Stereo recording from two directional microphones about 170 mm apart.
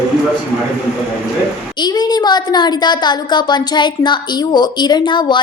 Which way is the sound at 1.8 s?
25° left (ahead or behind).